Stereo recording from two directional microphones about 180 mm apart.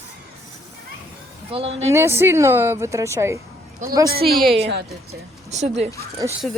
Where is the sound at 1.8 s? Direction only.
15° right (ahead or behind).